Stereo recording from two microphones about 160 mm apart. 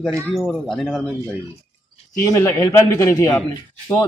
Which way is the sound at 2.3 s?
15° left (ahead or behind).